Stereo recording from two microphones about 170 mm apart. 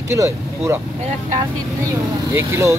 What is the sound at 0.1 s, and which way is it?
Speech, 15° right (ahead or behind).